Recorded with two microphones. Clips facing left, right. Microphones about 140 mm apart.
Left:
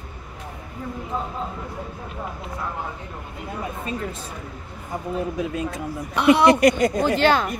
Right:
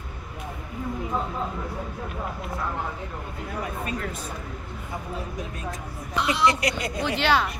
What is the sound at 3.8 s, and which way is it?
Speech, 30° left (ahead or behind).